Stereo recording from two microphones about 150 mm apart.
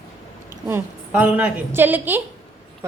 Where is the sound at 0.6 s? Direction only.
15° right (ahead or behind).